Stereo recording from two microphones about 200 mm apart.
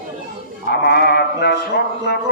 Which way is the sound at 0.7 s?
55° left (ahead or behind).